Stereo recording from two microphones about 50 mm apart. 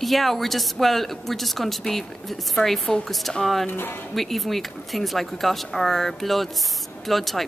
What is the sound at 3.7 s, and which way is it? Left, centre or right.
Speech, left.